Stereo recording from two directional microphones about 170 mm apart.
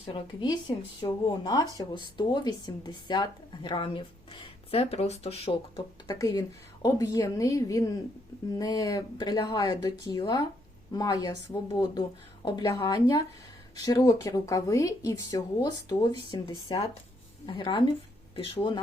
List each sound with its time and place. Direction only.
0.0 s speech: 30° left (ahead or behind)
6.1 s speech: 20° left (ahead or behind)